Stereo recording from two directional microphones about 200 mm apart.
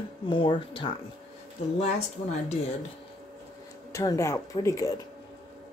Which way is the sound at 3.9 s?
15° left (ahead or behind).